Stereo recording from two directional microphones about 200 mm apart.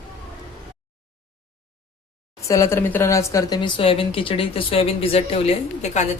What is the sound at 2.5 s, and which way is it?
A woman's voice, 15° left (ahead or behind).